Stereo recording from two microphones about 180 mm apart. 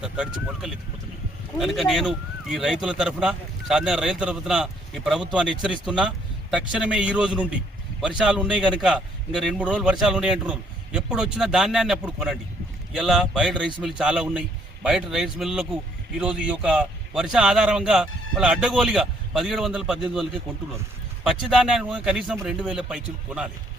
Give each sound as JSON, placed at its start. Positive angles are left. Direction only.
{"t": 0.0, "sound": "a man's voice", "side_deg": -5}
{"t": 21.2, "sound": "a man's voice", "side_deg": 0}